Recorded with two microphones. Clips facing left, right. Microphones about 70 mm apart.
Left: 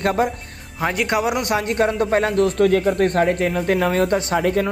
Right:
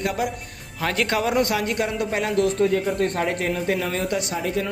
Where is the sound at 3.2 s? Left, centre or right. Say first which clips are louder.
Left 4 dB; left.